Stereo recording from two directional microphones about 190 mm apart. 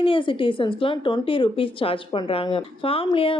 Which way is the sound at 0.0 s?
25° left (ahead or behind).